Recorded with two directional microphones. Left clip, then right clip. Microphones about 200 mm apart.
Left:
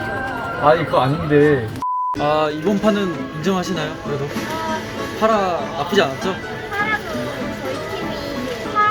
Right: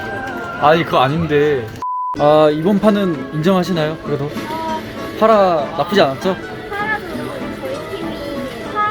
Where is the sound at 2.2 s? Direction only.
20° right (ahead or behind).